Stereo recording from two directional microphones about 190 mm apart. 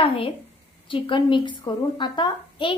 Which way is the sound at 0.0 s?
30° left (ahead or behind).